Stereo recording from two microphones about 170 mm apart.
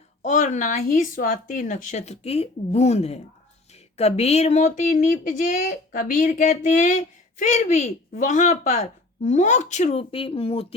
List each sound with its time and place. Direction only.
0.2 s speech: 45° left (ahead or behind)